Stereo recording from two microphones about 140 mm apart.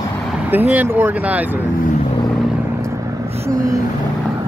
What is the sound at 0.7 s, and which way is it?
Speech, 15° right (ahead or behind).